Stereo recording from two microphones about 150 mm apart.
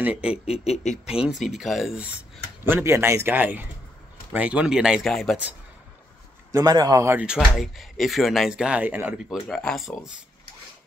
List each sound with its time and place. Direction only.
0.0 s a man's voice: 10° right (ahead or behind)
0.5 s speech: 45° left (ahead or behind)
1.1 s speech: 5° right (ahead or behind)
2.6 s a man's voice: 15° right (ahead or behind); by 5.4 s centre (ahead or behind)
6.5 s a man's voice: 25° right (ahead or behind)
7.2 s speech: 5° right (ahead or behind)
9.5 s speech: 5° left (ahead or behind)